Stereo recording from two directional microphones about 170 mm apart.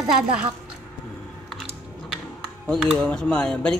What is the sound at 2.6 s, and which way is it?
Speech, centre (ahead or behind).